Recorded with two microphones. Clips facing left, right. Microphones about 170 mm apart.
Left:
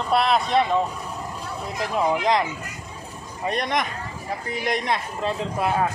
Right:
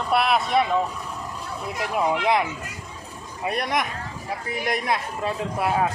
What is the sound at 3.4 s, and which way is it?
Speech, 5° right (ahead or behind).